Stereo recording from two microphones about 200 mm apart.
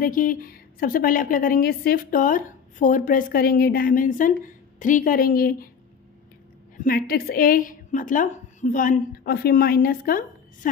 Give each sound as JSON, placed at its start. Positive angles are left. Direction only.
{"t": 0.0, "sound": "a woman's voice", "side_deg": 45}
{"t": 6.8, "sound": "a woman's voice", "side_deg": 45}